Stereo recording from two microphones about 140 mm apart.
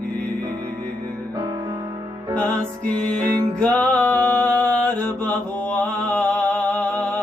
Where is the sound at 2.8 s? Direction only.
5° left (ahead or behind).